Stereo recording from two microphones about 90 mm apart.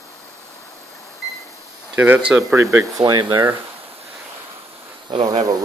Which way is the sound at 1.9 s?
20° right (ahead or behind).